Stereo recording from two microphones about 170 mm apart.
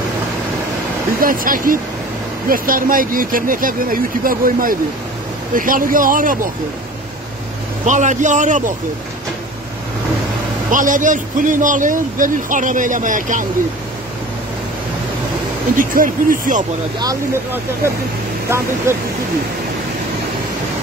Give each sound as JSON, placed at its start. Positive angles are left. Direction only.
{"t": 1.2, "sound": "a man's voice", "side_deg": -55}
{"t": 7.8, "sound": "a man's voice", "side_deg": -45}
{"t": 10.7, "sound": "a man's voice", "side_deg": -50}
{"t": 15.7, "sound": "a man's voice", "side_deg": -55}
{"t": 17.0, "sound": "speech", "side_deg": -20}
{"t": 18.5, "sound": "speech", "side_deg": -15}